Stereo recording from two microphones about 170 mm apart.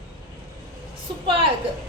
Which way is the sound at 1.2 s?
30° right (ahead or behind).